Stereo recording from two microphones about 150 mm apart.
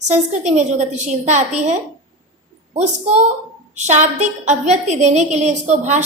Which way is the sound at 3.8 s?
50° right (ahead or behind).